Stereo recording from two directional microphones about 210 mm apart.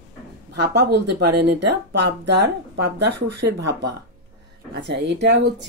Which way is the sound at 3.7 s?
55° right (ahead or behind).